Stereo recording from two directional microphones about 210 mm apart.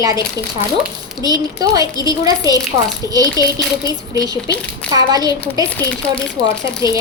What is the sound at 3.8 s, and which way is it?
A woman's voice, 15° right (ahead or behind).